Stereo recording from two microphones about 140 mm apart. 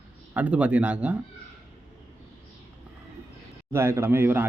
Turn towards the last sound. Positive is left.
turn(degrees=-15)  # may be behind; listen again after turning